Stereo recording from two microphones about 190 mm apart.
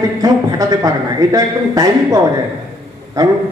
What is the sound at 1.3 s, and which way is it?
Speech, 20° right (ahead or behind).